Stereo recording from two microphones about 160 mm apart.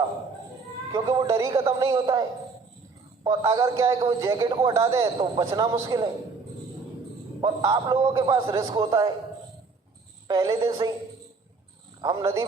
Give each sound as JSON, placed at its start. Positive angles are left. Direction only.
{"t": 0.9, "sound": "a man's voice", "side_deg": -25}
{"t": 3.2, "sound": "a man's voice", "side_deg": -20}
{"t": 7.4, "sound": "a man's voice", "side_deg": -25}
{"t": 10.2, "sound": "a man's voice", "side_deg": -25}
{"t": 12.0, "sound": "a man's voice", "side_deg": -20}